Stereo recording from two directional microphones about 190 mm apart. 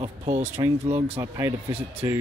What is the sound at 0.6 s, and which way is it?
Speech, 20° right (ahead or behind).